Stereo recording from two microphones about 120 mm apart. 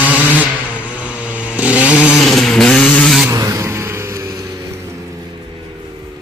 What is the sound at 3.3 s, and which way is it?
Vehicle, 30° right (ahead or behind).